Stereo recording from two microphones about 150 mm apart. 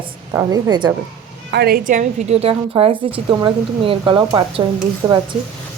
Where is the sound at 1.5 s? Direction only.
90° right; by 5.4 s 30° right (ahead or behind).